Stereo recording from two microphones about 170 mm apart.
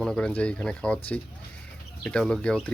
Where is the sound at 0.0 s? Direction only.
5° left (ahead or behind).